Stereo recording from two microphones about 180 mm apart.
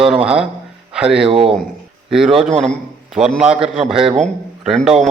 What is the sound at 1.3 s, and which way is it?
Speech, 30° right (ahead or behind).